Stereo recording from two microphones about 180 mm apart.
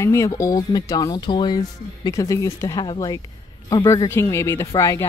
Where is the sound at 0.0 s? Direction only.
15° left (ahead or behind).